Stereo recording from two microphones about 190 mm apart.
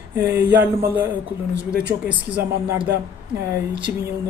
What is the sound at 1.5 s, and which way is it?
Speech, 60° right (ahead or behind).